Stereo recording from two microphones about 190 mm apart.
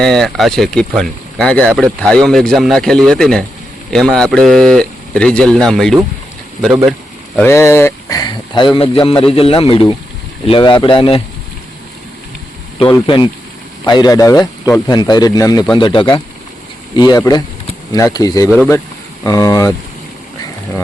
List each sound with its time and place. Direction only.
0.0 s speech: centre (ahead or behind)
7.3 s speech: 15° left (ahead or behind)
12.8 s speech: 25° left (ahead or behind)